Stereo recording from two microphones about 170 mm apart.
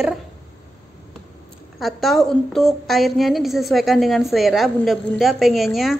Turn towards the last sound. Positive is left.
turn(degrees=0)  # may be behind; listen again after turning